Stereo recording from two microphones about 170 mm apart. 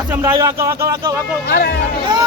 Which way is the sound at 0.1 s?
15° right (ahead or behind).